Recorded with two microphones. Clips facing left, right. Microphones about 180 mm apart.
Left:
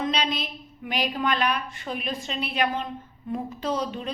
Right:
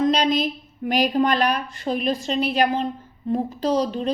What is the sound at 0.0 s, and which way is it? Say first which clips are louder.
A woman's voice: right 8 dB; 45° right (ahead or behind).